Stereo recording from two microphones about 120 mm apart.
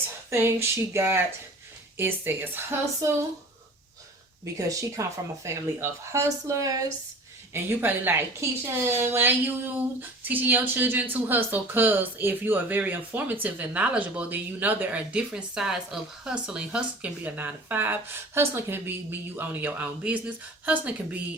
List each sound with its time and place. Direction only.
0.3 s speech: 20° right (ahead or behind)
4.5 s speech: 25° right (ahead or behind)
7.5 s a woman's voice: 15° right (ahead or behind)